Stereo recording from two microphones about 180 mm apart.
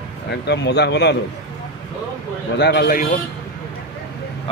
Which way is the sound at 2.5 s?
65° left (ahead or behind).